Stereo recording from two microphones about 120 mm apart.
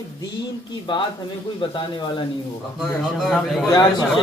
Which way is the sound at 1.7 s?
45° left (ahead or behind).